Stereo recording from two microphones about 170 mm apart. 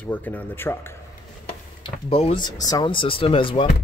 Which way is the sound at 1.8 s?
35° left (ahead or behind).